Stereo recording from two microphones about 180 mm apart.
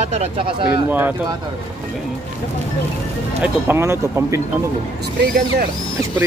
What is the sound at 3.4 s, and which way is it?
Speech, 10° right (ahead or behind).